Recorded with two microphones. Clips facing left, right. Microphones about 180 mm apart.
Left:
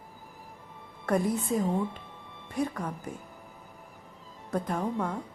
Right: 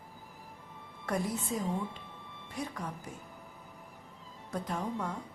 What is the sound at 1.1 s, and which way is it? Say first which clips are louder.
A woman's voice: left 7 dB; 55° left (ahead or behind).